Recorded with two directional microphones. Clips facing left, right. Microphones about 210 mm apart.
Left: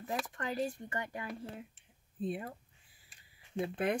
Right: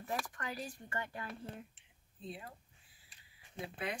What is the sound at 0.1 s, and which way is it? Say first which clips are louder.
Speech: left 4 dB; 25° left (ahead or behind).